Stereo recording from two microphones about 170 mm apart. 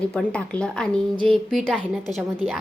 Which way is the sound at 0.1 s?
5° left (ahead or behind).